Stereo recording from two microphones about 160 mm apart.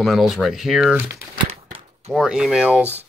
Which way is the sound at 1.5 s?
40° right (ahead or behind).